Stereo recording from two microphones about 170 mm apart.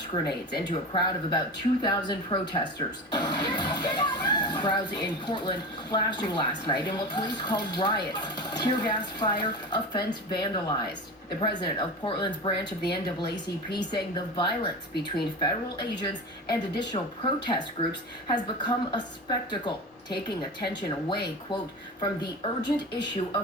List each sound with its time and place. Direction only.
0.1 s speech: 25° left (ahead or behind)
16.5 s speech: 25° left (ahead or behind)